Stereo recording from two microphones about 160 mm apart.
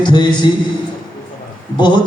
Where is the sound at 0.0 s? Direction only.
30° left (ahead or behind).